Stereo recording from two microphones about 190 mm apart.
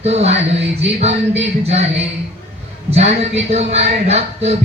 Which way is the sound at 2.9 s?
35° right (ahead or behind).